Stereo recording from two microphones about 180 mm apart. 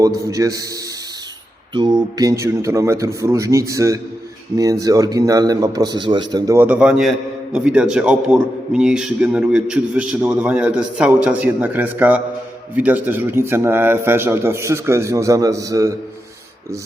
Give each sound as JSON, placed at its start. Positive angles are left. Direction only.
{"t": 0.0, "sound": "a man's voice", "side_deg": -20}
{"t": 2.4, "sound": "a man's voice", "side_deg": -15}